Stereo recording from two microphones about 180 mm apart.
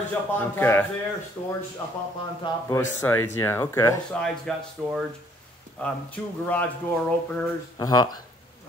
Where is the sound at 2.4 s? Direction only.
25° left (ahead or behind).